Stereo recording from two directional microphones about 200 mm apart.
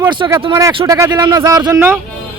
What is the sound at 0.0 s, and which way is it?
Speech, 20° right (ahead or behind).